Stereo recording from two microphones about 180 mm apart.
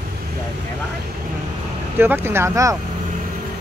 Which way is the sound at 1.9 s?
10° right (ahead or behind).